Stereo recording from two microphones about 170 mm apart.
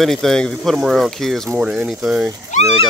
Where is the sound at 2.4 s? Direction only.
45° left (ahead or behind).